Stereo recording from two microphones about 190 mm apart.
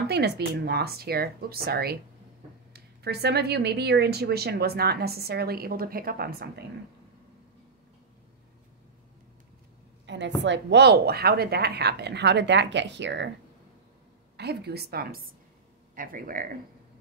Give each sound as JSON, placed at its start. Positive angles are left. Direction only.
{"t": 0.1, "sound": "speech", "side_deg": -60}
{"t": 10.0, "sound": "speech", "side_deg": -70}
{"t": 14.3, "sound": "speech", "side_deg": -60}